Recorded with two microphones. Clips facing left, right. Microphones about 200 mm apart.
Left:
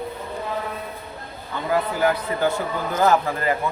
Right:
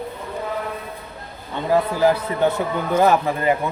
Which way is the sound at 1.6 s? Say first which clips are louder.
Right 4 dB; 25° right (ahead or behind).